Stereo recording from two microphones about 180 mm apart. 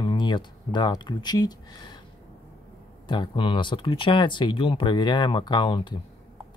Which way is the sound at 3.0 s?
25° left (ahead or behind).